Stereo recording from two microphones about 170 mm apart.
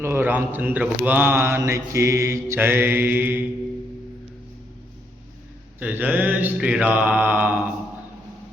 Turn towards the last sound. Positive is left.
turn(degrees=-10)  # may be behind; listen again after turning